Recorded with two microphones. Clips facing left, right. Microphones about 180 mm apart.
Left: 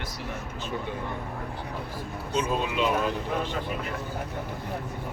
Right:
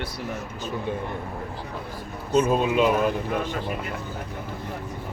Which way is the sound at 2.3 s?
50° right (ahead or behind).